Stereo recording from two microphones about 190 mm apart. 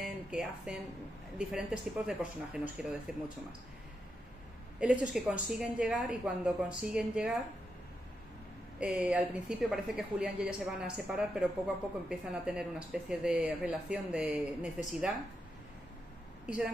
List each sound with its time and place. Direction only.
0.3 s speech: 5° right (ahead or behind)
4.7 s speech: 5° right (ahead or behind)
8.7 s speech: 5° right (ahead or behind)
16.4 s a woman's voice: 5° right (ahead or behind)